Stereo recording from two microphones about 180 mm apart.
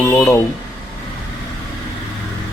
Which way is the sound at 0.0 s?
15° left (ahead or behind).